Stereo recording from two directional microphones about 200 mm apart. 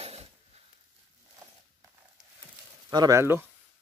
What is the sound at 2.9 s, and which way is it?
Speech, 15° right (ahead or behind).